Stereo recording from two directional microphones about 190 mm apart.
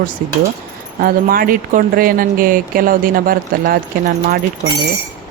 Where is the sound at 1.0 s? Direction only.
50° right (ahead or behind).